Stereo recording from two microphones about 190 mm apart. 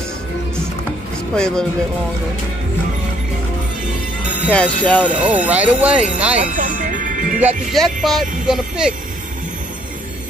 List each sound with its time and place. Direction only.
1.3 s speech: 5° left (ahead or behind)
4.5 s speech: 5° left (ahead or behind)
5.0 s speech: 5° right (ahead or behind)
6.4 s music: 45° right (ahead or behind)
7.4 s music: centre (ahead or behind)